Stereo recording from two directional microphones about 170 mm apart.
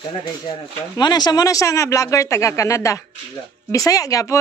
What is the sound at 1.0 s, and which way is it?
Speech, 25° left (ahead or behind).